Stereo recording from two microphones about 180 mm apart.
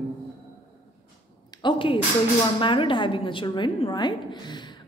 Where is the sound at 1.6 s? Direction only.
30° left (ahead or behind).